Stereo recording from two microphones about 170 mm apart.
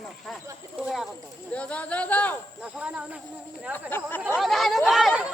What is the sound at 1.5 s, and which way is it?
Speech, 5° left (ahead or behind).